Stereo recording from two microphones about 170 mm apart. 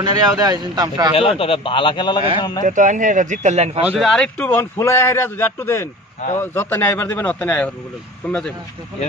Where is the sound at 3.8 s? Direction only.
Centre (ahead or behind).